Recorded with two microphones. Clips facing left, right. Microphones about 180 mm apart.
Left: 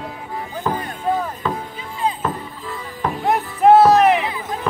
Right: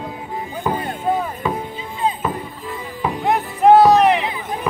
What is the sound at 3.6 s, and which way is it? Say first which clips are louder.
Music: even; centre (ahead or behind).